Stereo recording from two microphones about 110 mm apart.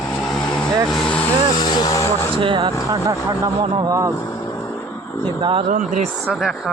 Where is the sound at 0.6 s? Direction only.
5° left (ahead or behind).